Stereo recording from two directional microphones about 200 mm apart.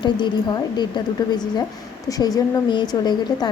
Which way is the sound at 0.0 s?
20° left (ahead or behind).